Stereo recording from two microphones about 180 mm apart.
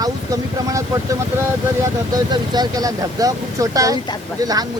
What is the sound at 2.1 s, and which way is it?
Speech, 20° right (ahead or behind).